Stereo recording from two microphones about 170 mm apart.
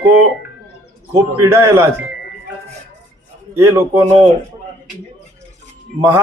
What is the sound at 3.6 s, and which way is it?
Speech, 15° right (ahead or behind).